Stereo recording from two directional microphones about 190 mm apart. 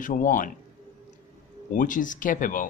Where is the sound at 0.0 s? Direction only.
45° left (ahead or behind).